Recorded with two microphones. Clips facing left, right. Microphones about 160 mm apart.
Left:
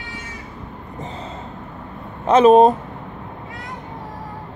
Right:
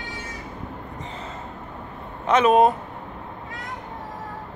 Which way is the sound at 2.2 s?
35° left (ahead or behind).